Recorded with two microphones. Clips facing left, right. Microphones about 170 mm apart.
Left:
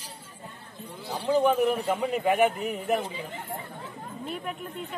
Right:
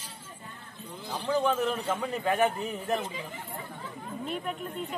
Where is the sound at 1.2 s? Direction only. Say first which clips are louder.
Left 5 dB; 15° left (ahead or behind).